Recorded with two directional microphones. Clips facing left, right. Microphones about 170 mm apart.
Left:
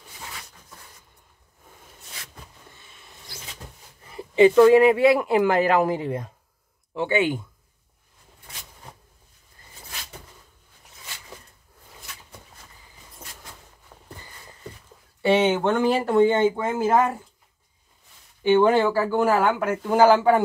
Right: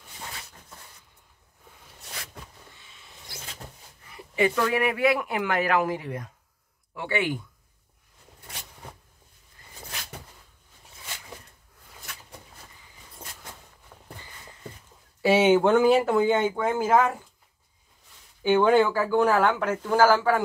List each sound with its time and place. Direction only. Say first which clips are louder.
4.0 s speech: left 9 dB; 25° left (ahead or behind)
13.9 s walk: left 1 dB; 10° left (ahead or behind)
15.2 s speech: right 1 dB; 10° right (ahead or behind)
18.6 s speech: right 1 dB; centre (ahead or behind); by 20.4 s 20° left (ahead or behind)